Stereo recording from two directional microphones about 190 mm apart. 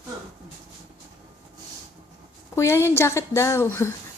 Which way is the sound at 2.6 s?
15° left (ahead or behind).